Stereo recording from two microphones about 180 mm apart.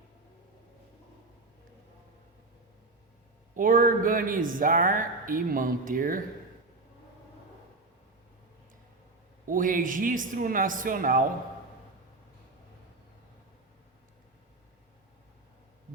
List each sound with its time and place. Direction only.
3.5 s speech: 50° right (ahead or behind)
9.5 s speech: 45° right (ahead or behind)